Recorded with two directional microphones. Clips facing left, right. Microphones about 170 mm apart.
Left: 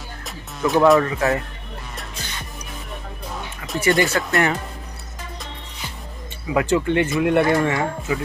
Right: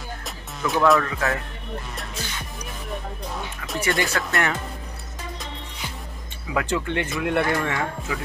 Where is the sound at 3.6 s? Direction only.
Centre (ahead or behind).